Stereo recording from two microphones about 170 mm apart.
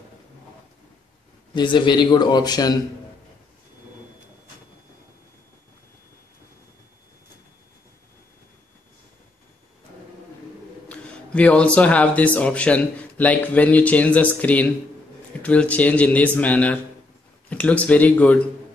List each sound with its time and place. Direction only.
1.5 s a man's voice: 30° left (ahead or behind)
10.9 s speech: 5° left (ahead or behind)